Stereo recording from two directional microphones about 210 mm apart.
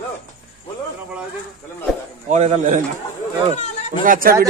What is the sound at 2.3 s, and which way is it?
Speech, 30° right (ahead or behind).